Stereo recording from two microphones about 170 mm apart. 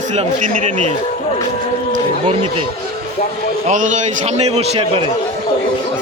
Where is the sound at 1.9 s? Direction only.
35° right (ahead or behind).